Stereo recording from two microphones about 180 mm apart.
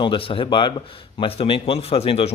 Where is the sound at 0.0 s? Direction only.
30° left (ahead or behind).